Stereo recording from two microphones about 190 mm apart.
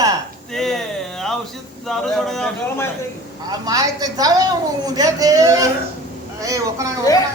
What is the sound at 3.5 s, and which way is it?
A woman's voice, 20° right (ahead or behind).